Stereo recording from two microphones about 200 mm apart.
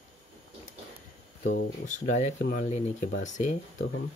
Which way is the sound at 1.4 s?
45° left (ahead or behind).